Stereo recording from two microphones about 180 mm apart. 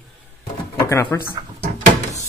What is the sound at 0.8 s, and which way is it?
Speech, 15° left (ahead or behind).